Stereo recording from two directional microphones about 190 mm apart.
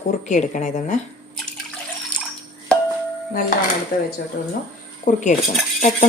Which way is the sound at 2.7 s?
5° left (ahead or behind).